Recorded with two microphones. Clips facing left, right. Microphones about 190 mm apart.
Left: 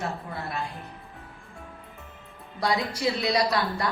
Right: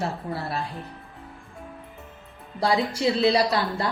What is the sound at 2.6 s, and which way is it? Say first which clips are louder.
A woman's voice: right 3 dB; 30° right (ahead or behind).